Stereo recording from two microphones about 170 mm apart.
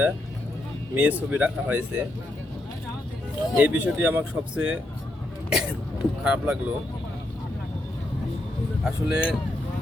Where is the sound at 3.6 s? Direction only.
10° right (ahead or behind).